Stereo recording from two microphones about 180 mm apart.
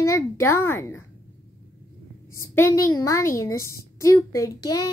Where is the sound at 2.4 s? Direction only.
15° left (ahead or behind).